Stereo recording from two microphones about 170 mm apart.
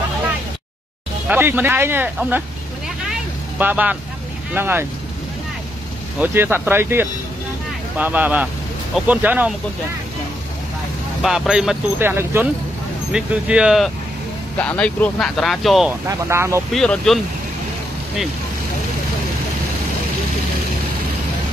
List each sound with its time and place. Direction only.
1.3 s speech: 10° right (ahead or behind)
3.1 s vehicle: 10° right (ahead or behind)
4.6 s speech: 10° right (ahead or behind)
6.1 s speech: 10° right (ahead or behind)
11.2 s speech: 5° right (ahead or behind)
16.1 s speech: 15° right (ahead or behind)
16.7 s speech: 5° left (ahead or behind)